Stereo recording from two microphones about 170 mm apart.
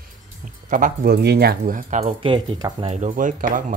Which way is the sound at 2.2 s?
30° right (ahead or behind).